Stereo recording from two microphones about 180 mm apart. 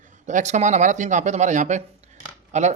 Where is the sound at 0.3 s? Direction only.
40° right (ahead or behind).